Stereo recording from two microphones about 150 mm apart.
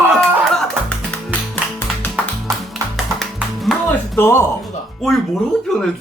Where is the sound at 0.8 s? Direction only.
10° left (ahead or behind).